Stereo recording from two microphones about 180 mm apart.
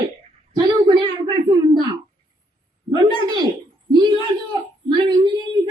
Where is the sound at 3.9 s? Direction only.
25° right (ahead or behind).